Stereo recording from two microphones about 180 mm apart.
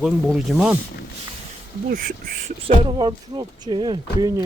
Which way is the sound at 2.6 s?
25° right (ahead or behind).